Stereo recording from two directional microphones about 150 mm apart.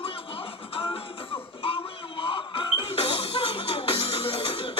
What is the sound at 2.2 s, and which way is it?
Music, 35° left (ahead or behind).